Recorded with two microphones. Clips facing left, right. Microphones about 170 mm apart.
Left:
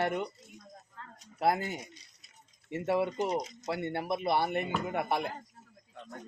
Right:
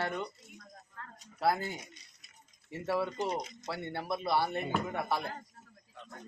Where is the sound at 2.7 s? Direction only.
20° left (ahead or behind).